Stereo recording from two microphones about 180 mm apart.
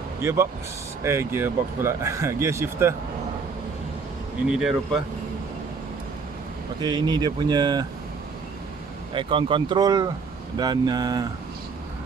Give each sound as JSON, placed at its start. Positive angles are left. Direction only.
{"t": 0.2, "sound": "speech", "side_deg": -15}
{"t": 4.5, "sound": "speech", "side_deg": -5}
{"t": 6.8, "sound": "speech", "side_deg": -25}
{"t": 9.1, "sound": "speech", "side_deg": -30}